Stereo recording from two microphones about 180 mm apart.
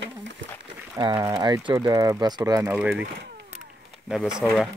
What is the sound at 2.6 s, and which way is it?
Speech, 5° right (ahead or behind).